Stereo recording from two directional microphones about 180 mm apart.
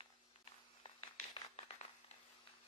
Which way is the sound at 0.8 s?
30° left (ahead or behind).